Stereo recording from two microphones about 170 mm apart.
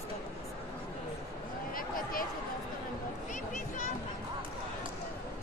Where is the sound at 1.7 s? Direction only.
55° left (ahead or behind).